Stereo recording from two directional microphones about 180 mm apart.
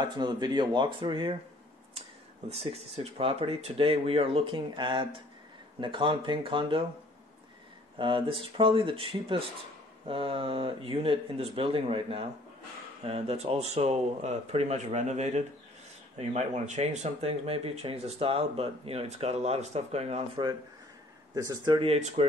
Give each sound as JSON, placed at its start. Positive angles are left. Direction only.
{"t": 0.0, "sound": "speech", "side_deg": -25}
{"t": 2.5, "sound": "speech", "side_deg": -35}
{"t": 8.0, "sound": "speech", "side_deg": -30}